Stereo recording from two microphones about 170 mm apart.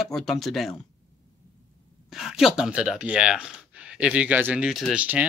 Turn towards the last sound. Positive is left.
turn(degrees=-5)  # may be behind; listen again after turning